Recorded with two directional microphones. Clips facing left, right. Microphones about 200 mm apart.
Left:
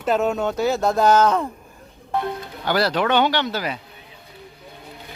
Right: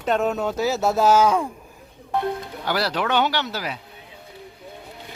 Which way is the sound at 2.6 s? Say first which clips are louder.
Left 4 dB; 10° right (ahead or behind).